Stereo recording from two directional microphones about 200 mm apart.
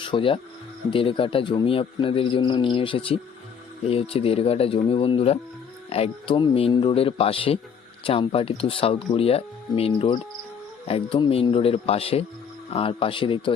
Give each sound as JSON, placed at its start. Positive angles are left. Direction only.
{"t": 0.0, "sound": "speech", "side_deg": 25}